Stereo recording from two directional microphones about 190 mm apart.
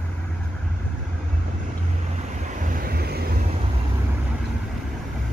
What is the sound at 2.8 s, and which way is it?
Vehicle, 55° right (ahead or behind).